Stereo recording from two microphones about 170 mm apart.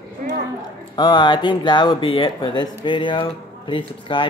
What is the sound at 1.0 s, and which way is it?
Speech, 25° left (ahead or behind).